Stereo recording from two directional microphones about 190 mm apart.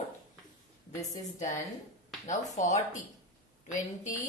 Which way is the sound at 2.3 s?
40° left (ahead or behind).